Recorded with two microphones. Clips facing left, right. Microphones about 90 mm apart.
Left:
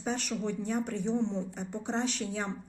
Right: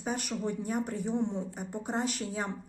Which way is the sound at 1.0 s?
15° right (ahead or behind).